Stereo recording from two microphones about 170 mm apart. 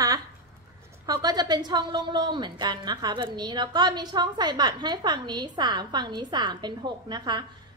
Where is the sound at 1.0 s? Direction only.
25° right (ahead or behind).